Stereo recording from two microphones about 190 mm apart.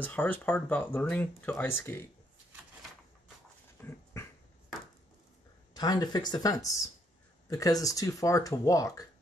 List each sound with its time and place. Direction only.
0.0 s speech: 10° left (ahead or behind)
3.8 s dog: 5° left (ahead or behind)
5.8 s speech: 20° left (ahead or behind)